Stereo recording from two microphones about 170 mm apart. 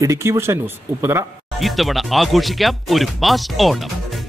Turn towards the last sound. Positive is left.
turn(degrees=0)  # may be behind; listen again after turning